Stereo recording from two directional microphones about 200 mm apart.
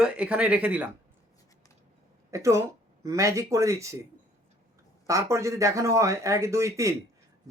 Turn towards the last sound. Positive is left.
turn(degrees=-15)  # may be behind; listen again after turning